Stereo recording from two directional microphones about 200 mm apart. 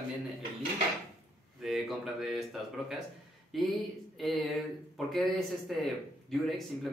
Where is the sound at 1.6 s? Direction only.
Centre (ahead or behind).